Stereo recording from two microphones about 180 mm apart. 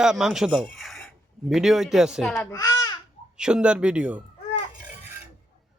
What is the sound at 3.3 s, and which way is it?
Speech, 5° right (ahead or behind).